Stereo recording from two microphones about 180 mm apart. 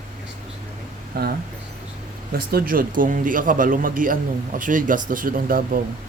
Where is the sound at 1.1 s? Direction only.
60° right (ahead or behind).